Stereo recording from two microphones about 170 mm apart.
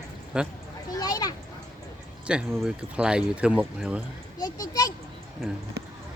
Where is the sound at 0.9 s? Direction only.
20° left (ahead or behind).